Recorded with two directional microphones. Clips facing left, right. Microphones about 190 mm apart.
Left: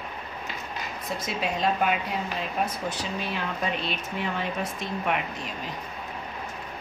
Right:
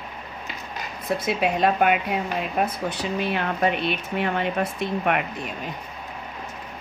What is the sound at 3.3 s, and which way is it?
Speech, 60° right (ahead or behind).